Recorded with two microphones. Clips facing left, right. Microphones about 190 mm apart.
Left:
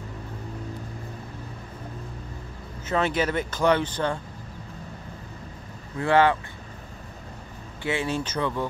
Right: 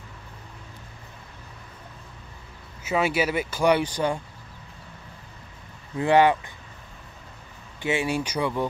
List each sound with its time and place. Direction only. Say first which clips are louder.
2.8 s speech: right 1 dB; 10° right (ahead or behind)
5.9 s speech: right 2 dB; 15° right (ahead or behind)
7.8 s speech: right 2 dB; 15° right (ahead or behind)